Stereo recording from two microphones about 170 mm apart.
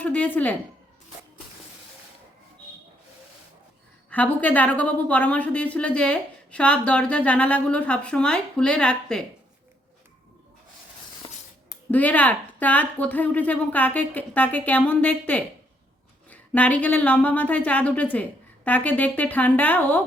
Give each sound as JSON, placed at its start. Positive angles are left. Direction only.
{"t": 0.0, "sound": "a woman's voice", "side_deg": 10}
{"t": 4.1, "sound": "a woman's voice", "side_deg": 10}
{"t": 11.2, "sound": "a sound", "side_deg": 25}
{"t": 11.9, "sound": "a woman's voice", "side_deg": 10}